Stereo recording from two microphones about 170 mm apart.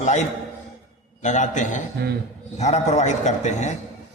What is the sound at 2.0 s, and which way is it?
Speech, 75° right (ahead or behind).